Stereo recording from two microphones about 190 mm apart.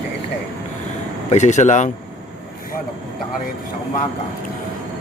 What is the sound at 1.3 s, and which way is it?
Speech, 40° left (ahead or behind).